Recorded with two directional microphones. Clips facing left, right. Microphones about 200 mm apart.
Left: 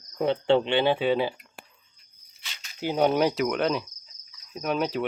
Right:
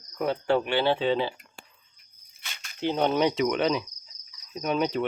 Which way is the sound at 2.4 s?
55° right (ahead or behind).